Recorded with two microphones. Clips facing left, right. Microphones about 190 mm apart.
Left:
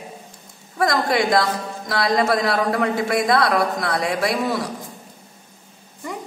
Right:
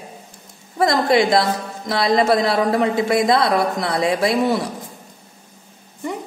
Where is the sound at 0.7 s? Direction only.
25° right (ahead or behind).